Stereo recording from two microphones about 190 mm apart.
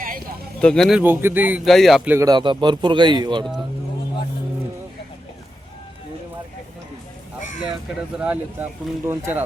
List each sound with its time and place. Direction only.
0.6 s speech: 5° left (ahead or behind)
2.1 s a man's voice: 20° right (ahead or behind)
7.9 s speech: 5° right (ahead or behind)